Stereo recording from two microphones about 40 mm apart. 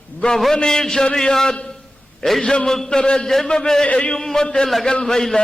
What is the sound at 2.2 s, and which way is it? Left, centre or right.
Speech, centre.